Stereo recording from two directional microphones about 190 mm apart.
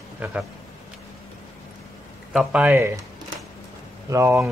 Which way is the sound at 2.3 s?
5° right (ahead or behind).